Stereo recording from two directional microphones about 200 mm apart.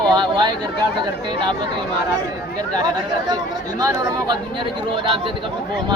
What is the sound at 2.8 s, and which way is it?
Speech, 20° right (ahead or behind).